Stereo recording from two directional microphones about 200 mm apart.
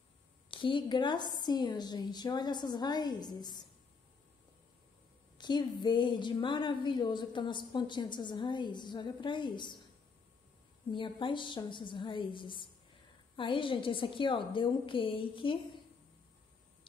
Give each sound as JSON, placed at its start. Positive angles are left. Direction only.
{"t": 0.5, "sound": "a woman's voice", "side_deg": 25}
{"t": 5.4, "sound": "a woman's voice", "side_deg": 20}
{"t": 10.9, "sound": "a woman's voice", "side_deg": 25}